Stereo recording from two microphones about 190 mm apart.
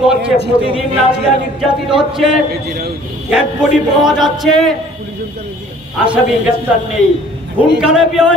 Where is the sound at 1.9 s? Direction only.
Centre (ahead or behind).